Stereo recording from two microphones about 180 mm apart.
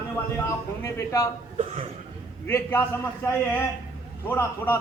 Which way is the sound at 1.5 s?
35° right (ahead or behind).